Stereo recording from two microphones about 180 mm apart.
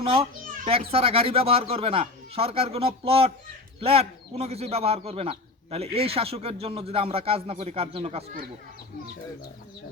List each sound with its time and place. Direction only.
0.0 s speech: 30° right (ahead or behind)